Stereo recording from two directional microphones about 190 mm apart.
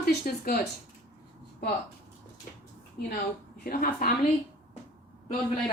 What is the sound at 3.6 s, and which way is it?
Speech, 50° left (ahead or behind).